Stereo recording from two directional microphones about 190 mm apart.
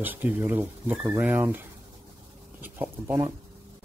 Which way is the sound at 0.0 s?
10° right (ahead or behind).